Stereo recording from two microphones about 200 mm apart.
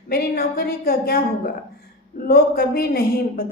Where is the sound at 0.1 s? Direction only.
50° left (ahead or behind).